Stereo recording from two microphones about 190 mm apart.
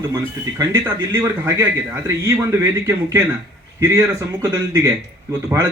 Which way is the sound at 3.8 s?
15° right (ahead or behind).